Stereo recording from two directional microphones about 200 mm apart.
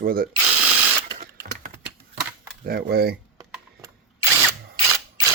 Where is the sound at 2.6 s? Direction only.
50° right (ahead or behind).